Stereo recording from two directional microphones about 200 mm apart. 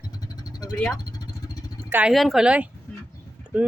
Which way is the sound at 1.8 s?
5° right (ahead or behind).